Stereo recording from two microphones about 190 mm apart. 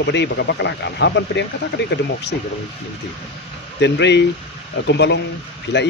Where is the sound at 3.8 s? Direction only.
65° left (ahead or behind).